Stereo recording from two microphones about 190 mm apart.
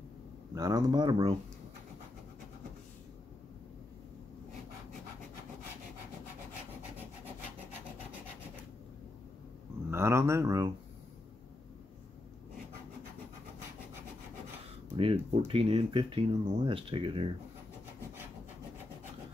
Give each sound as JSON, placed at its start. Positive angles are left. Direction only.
{"t": 0.6, "sound": "speech", "side_deg": -20}
{"t": 9.8, "sound": "speech", "side_deg": -15}
{"t": 15.0, "sound": "speech", "side_deg": -30}